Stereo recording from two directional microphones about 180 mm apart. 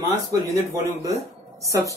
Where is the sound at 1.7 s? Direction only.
15° right (ahead or behind).